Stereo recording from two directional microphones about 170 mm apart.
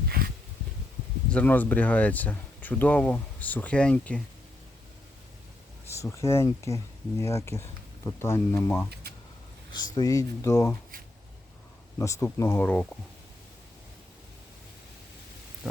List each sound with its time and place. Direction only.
1.3 s speech: 10° left (ahead or behind)
6.0 s speech: 15° left (ahead or behind)
11.9 s speech: 15° left (ahead or behind)
15.6 s pig: centre (ahead or behind)